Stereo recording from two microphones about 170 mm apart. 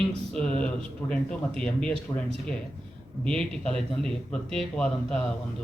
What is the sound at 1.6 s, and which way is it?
Speech, 5° left (ahead or behind).